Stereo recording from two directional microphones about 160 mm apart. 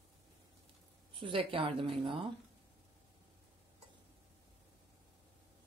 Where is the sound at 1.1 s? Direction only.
35° right (ahead or behind).